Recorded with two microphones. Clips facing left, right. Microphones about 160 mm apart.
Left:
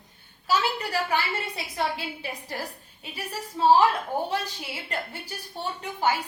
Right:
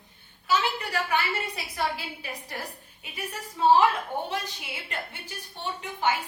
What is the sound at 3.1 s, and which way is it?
Speech, 35° left (ahead or behind).